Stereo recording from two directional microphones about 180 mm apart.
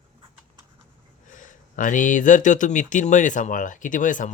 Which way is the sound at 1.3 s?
45° left (ahead or behind).